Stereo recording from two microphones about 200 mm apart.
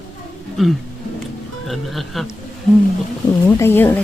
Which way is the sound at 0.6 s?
Centre (ahead or behind).